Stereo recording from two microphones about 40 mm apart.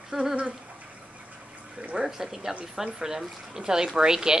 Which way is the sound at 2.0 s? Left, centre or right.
Centre.